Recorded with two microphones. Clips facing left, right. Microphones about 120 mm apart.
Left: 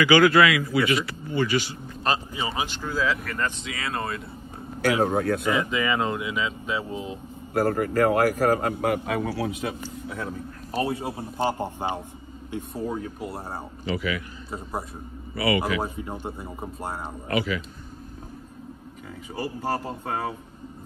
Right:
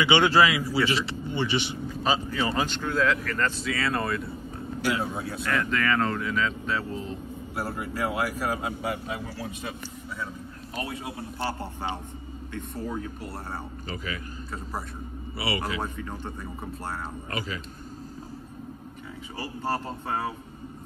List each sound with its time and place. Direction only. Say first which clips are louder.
0.0 s a man's voice: left 3 dB; 25° right (ahead or behind)
2.3 s speech: right 2 dB; 15° left (ahead or behind)
3.3 s a man's voice: right 2 dB; 15° left (ahead or behind)
4.8 s speech: left 7 dB; 55° left (ahead or behind)
5.6 s speech: left 1 dB; 10° left (ahead or behind)
7.5 s speech: left 10 dB; 55° left (ahead or behind)
10.7 s a man's voice: left 7 dB; 30° left (ahead or behind)
12.9 s speech: left 3 dB; centre (ahead or behind)
13.8 s speech: left 10 dB; 40° right (ahead or behind)
15.3 s a man's voice: left 7 dB; 25° right (ahead or behind)
16.0 s speech: left 3 dB; 15° left (ahead or behind)
17.3 s speech: left 9 dB; 40° right (ahead or behind)